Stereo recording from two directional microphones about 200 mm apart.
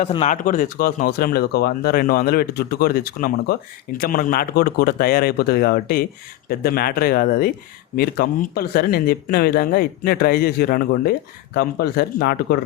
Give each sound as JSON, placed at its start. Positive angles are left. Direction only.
{"t": 0.0, "sound": "speech", "side_deg": 35}